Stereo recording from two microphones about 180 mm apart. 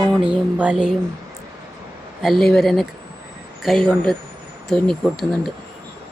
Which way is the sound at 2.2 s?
Centre (ahead or behind).